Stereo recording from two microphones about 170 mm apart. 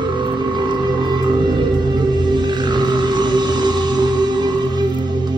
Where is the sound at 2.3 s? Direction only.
25° right (ahead or behind).